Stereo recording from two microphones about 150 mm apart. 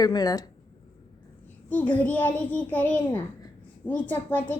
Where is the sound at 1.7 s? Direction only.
10° left (ahead or behind).